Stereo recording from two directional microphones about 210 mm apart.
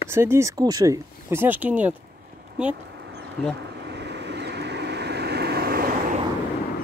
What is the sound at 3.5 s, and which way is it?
Vehicle, 55° right (ahead or behind).